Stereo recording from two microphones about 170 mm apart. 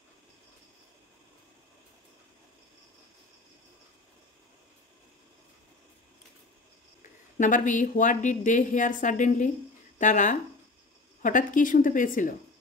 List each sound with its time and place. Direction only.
7.3 s a woman's voice: 50° left (ahead or behind)